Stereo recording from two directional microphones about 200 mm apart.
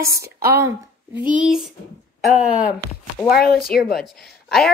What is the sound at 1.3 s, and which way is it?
Speech, centre (ahead or behind).